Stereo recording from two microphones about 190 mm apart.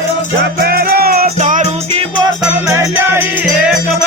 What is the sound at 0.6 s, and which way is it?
Music, 55° right (ahead or behind).